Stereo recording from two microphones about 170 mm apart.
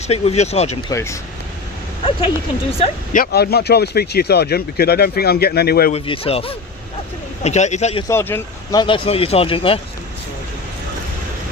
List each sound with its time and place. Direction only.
0.1 s speech: 40° left (ahead or behind)
0.9 s speech: 15° left (ahead or behind)
2.7 s speech: 35° left (ahead or behind)
3.2 s speech: 70° left (ahead or behind)
5.9 s speech: 35° left (ahead or behind)
8.0 s speech: 15° left (ahead or behind)
8.8 s speech: 30° left (ahead or behind)